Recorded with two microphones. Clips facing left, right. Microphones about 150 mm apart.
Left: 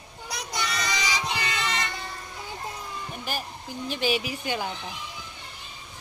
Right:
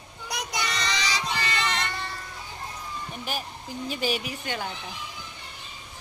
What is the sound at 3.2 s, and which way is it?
A woman's voice, centre (ahead or behind).